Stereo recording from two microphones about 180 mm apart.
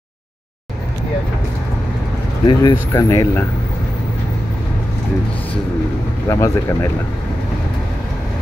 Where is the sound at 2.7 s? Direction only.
15° left (ahead or behind).